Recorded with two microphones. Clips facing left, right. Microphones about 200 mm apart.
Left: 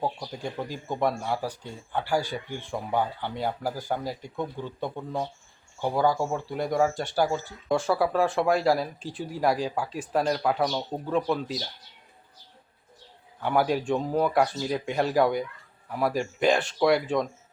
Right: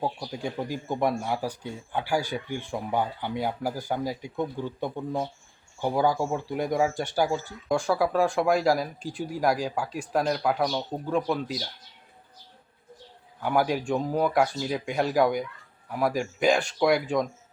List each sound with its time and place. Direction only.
0.0 s speech: 5° right (ahead or behind)
6.9 s speech: 15° right (ahead or behind)
7.3 s speech: 5° left (ahead or behind)
9.0 s speech: 10° right (ahead or behind)
9.4 s speech: centre (ahead or behind)
13.4 s speech: centre (ahead or behind)